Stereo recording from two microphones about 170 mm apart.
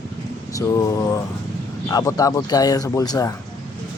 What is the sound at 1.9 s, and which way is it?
Speech, 20° left (ahead or behind).